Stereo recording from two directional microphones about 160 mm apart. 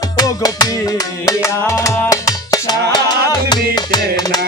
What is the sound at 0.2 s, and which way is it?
Music, 25° left (ahead or behind).